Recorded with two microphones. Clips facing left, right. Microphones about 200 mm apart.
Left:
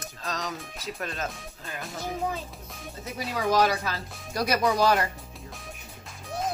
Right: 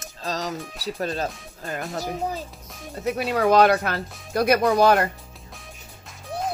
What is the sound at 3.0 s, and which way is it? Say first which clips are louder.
Speech: right 8 dB; 65° right (ahead or behind).